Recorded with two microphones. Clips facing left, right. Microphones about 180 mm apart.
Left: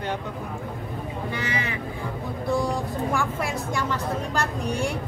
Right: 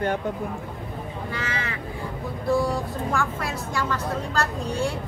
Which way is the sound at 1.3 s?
15° left (ahead or behind).